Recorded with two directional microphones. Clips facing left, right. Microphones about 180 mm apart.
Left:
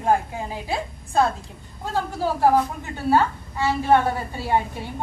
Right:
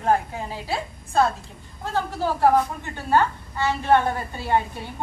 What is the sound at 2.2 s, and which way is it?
A woman's voice, 5° left (ahead or behind).